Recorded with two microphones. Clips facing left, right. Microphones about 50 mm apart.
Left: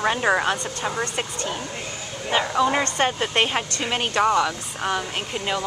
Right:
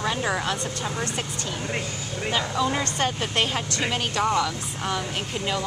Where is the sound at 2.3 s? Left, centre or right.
Left.